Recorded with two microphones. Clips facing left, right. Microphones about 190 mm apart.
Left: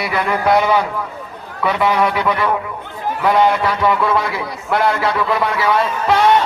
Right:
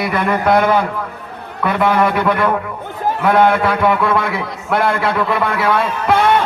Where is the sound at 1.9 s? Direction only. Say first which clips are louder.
Right 2 dB; 55° right (ahead or behind).